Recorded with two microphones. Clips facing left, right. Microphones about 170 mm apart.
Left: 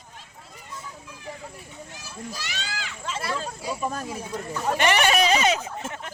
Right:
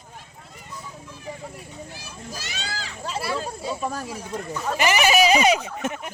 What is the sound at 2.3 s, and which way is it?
Children playing, 40° right (ahead or behind).